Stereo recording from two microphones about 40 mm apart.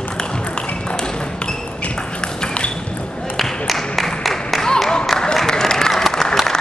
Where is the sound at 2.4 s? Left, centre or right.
Left.